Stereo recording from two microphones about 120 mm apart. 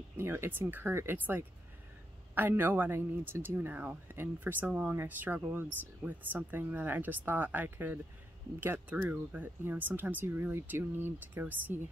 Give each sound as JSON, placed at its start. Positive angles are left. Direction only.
{"t": 0.2, "sound": "speech", "side_deg": -20}